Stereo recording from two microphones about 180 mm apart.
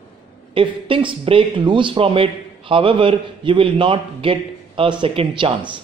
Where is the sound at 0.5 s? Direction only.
30° right (ahead or behind).